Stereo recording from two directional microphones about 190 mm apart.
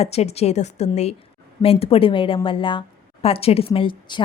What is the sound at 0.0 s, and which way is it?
A woman's voice, 35° left (ahead or behind).